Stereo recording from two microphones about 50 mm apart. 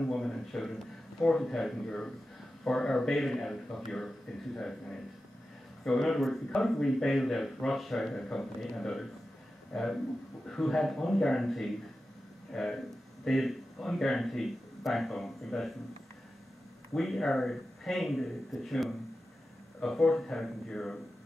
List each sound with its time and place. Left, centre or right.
0.0 s a man's voice: centre
16.9 s a man's voice: centre